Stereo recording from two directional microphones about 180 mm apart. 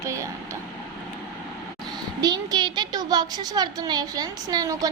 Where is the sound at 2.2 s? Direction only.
20° right (ahead or behind).